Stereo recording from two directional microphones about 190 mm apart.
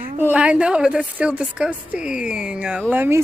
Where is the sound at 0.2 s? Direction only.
5° right (ahead or behind).